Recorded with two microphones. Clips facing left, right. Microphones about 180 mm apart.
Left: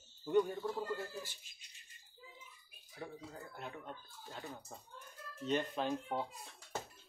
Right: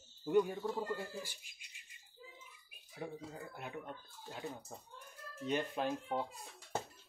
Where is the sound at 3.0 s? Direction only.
10° right (ahead or behind).